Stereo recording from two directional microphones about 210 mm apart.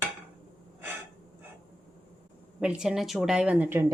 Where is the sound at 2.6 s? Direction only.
5° right (ahead or behind).